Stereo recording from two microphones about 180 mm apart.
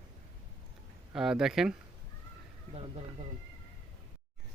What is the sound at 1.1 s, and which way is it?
Speech, 5° right (ahead or behind).